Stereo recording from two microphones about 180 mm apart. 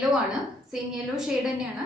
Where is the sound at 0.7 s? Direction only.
5° right (ahead or behind).